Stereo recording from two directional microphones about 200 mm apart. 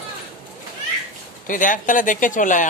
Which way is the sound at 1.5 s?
40° left (ahead or behind).